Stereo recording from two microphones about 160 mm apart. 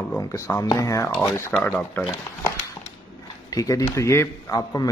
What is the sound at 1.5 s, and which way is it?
Speech, 10° left (ahead or behind).